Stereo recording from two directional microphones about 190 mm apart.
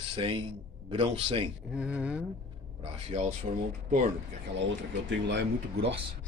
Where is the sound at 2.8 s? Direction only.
35° right (ahead or behind).